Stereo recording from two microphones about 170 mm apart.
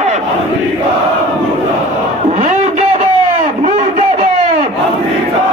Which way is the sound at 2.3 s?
45° right (ahead or behind).